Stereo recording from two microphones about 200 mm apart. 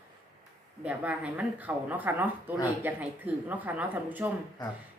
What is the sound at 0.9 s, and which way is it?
A woman's voice, 5° right (ahead or behind).